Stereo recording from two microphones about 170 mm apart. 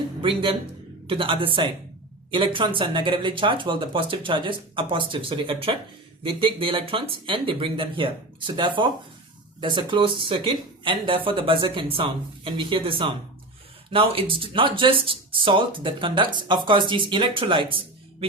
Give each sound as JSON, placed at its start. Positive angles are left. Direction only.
{"t": 0.2, "sound": "speech", "side_deg": -30}